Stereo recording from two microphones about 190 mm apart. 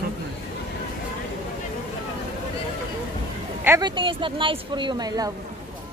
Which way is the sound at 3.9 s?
25° right (ahead or behind).